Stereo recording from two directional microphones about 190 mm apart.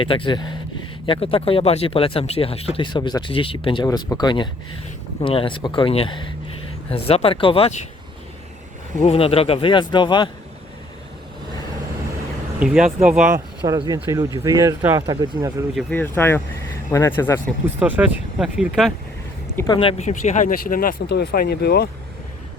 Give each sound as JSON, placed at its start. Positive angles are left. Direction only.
{"t": 0.0, "sound": "speech", "side_deg": 25}
{"t": 9.0, "sound": "speech", "side_deg": 35}
{"t": 12.5, "sound": "speech", "side_deg": -5}
{"t": 13.6, "sound": "speech", "side_deg": -20}
{"t": 15.9, "sound": "speech", "side_deg": 10}
{"t": 17.7, "sound": "speech", "side_deg": -10}
{"t": 19.5, "sound": "speech", "side_deg": 20}